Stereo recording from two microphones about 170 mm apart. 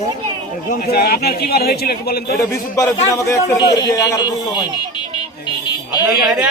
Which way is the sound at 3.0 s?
20° left (ahead or behind).